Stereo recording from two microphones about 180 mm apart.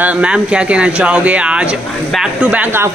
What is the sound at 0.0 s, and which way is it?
Speech, 5° right (ahead or behind).